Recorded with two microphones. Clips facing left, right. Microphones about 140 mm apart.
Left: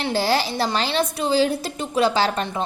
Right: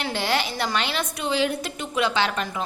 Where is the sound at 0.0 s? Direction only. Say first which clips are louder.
Left 4 dB; 35° left (ahead or behind).